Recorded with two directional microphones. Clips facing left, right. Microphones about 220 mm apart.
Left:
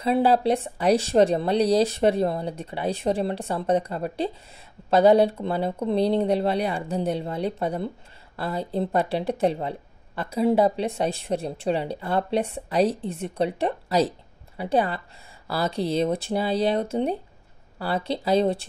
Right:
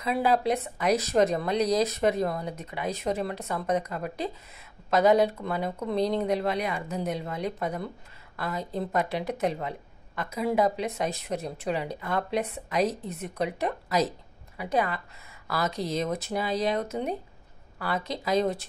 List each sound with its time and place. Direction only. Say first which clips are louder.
0.0 s a woman's voice: left 5 dB; 30° left (ahead or behind)